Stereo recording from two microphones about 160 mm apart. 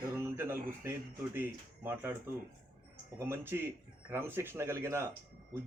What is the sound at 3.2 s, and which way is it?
Speech, 15° right (ahead or behind).